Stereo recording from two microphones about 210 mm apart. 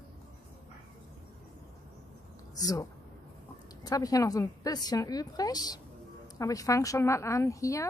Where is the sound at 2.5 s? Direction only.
15° left (ahead or behind).